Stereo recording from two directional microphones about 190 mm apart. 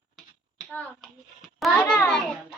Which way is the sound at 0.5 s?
5° left (ahead or behind).